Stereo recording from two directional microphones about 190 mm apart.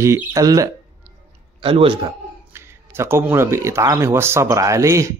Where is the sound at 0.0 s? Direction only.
15° right (ahead or behind).